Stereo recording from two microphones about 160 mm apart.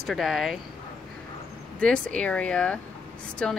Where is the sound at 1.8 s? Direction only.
5° left (ahead or behind).